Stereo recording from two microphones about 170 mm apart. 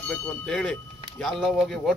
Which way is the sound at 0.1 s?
5° left (ahead or behind).